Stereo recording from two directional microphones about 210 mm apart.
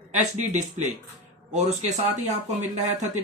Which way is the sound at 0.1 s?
35° right (ahead or behind).